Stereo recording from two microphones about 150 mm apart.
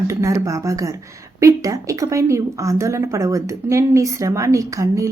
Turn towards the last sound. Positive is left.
turn(degrees=-20)  # may be behind; listen again after turning